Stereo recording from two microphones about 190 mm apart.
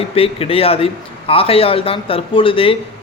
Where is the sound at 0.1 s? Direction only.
30° left (ahead or behind).